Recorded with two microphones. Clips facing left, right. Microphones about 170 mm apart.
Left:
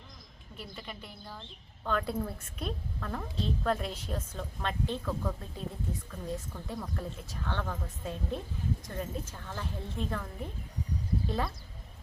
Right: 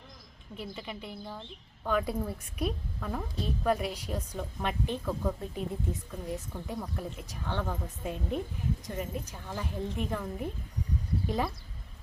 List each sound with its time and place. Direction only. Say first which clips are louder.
0.6 s a woman's voice: right 4 dB; 20° right (ahead or behind)